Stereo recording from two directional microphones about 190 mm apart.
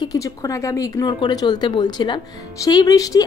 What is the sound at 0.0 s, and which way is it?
A woman's voice, 20° left (ahead or behind).